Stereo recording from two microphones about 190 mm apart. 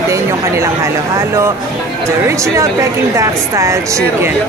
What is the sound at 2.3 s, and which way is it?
A woman's voice, 15° right (ahead or behind).